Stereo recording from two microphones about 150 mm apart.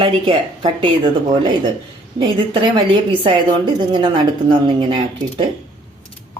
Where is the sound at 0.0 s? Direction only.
30° right (ahead or behind).